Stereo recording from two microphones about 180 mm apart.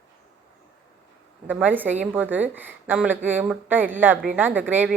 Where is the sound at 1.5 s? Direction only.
10° right (ahead or behind).